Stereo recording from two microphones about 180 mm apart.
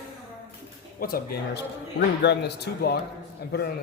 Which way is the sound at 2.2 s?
70° left (ahead or behind).